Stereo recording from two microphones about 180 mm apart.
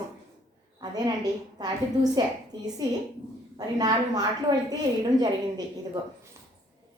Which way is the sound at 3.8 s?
20° right (ahead or behind).